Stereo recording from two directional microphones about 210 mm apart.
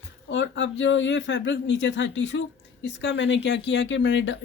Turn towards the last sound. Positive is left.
turn(degrees=60)  # may be behind; listen again after turning